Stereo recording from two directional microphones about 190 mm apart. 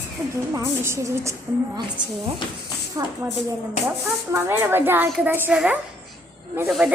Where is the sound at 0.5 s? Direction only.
15° right (ahead or behind).